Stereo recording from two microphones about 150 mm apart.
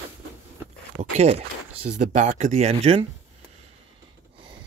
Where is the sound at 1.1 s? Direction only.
45° right (ahead or behind).